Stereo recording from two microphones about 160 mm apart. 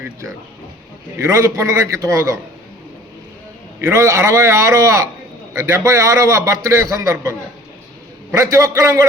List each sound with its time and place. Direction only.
1.2 s a man's voice: 20° right (ahead or behind)
3.8 s a man's voice: 15° right (ahead or behind)